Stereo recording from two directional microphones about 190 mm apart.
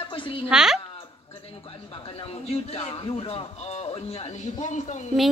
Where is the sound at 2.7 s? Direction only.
30° left (ahead or behind).